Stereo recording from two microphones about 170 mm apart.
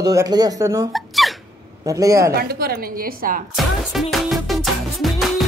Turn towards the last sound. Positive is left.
turn(degrees=0)  # may be behind; listen again after turning